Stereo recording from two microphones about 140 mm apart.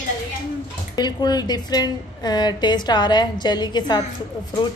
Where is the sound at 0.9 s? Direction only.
30° left (ahead or behind).